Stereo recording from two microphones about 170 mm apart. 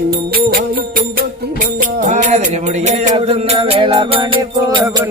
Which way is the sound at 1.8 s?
50° right (ahead or behind).